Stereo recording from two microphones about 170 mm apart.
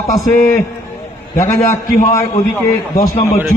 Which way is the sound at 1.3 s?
15° left (ahead or behind).